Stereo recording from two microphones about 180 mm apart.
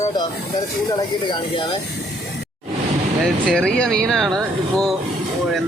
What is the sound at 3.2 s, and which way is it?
Speech, 5° left (ahead or behind).